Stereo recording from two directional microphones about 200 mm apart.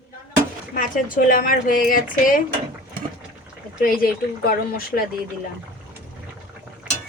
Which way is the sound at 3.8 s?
45° left (ahead or behind).